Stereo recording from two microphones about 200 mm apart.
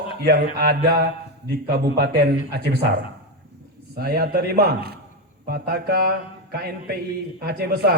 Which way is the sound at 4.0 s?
50° right (ahead or behind).